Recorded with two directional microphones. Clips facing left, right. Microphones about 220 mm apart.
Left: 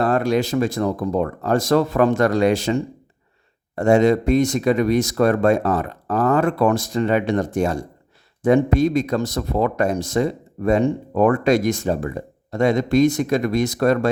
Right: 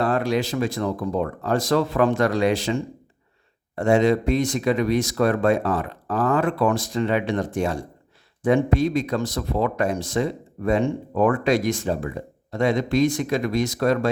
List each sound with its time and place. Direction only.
0.0 s speech: 45° left (ahead or behind)
3.8 s speech: 45° left (ahead or behind)